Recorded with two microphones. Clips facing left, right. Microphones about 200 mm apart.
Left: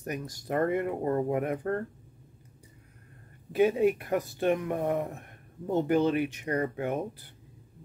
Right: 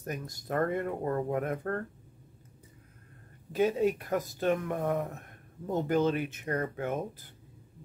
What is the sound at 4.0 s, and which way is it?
Speech, 15° left (ahead or behind).